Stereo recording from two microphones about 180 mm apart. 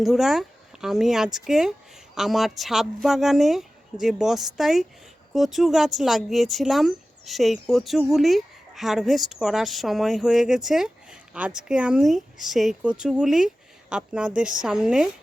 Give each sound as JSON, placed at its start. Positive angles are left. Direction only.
{"t": 0.0, "sound": "speech", "side_deg": 0}